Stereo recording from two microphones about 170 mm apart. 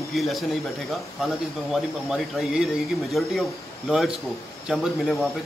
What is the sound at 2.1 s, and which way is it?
A man's voice, 5° right (ahead or behind).